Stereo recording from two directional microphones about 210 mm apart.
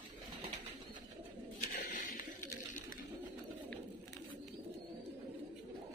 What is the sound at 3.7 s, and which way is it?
Bird, 5° left (ahead or behind).